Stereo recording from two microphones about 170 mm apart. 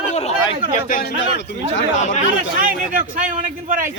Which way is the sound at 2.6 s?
50° right (ahead or behind).